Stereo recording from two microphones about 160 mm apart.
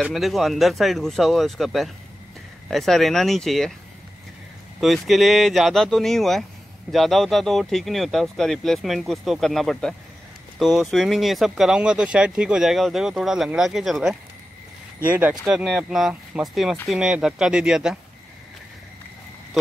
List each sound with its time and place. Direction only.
0.0 s speech: centre (ahead or behind)
4.7 s speech: centre (ahead or behind)
15.0 s speech: 10° right (ahead or behind)